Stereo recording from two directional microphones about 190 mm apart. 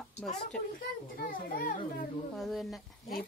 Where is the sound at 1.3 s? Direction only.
45° left (ahead or behind).